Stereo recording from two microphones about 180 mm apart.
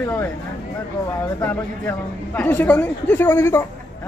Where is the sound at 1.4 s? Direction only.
10° left (ahead or behind).